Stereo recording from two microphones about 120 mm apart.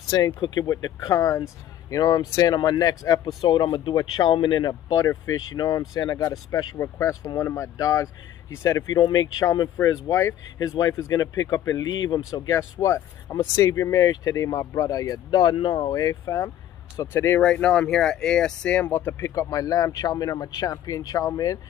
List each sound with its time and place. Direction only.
0.1 s speech: 35° left (ahead or behind)
17.4 s speech: 10° left (ahead or behind)
19.1 s speech: 25° left (ahead or behind)